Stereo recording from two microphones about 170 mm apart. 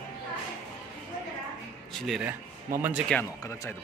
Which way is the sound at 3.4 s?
15° left (ahead or behind).